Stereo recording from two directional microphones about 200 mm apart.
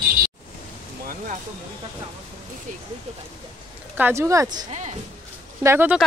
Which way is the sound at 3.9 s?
10° right (ahead or behind).